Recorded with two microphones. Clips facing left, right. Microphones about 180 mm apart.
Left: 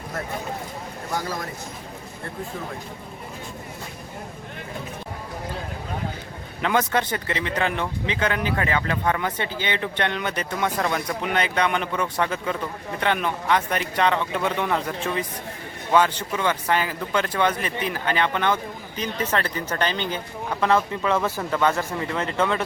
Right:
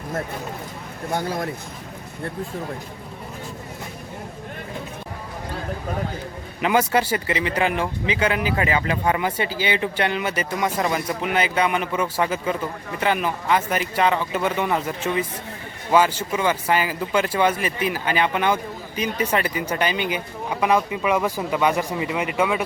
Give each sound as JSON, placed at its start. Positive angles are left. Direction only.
{"t": 6.6, "sound": "speech", "side_deg": -10}